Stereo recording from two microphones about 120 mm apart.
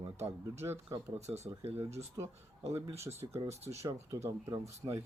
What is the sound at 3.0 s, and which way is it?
Speech, 20° right (ahead or behind).